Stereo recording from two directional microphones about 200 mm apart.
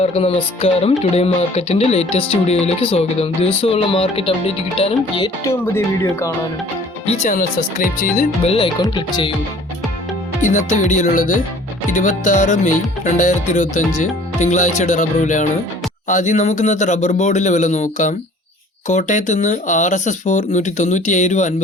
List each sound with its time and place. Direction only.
0.0 s music: 30° left (ahead or behind)
5.5 s speech: 15° left (ahead or behind)
7.0 s speech: 35° left (ahead or behind)
8.4 s music: 25° left (ahead or behind)
10.7 s speech: 40° left (ahead or behind)